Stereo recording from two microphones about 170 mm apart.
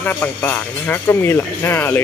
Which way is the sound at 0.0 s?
10° left (ahead or behind).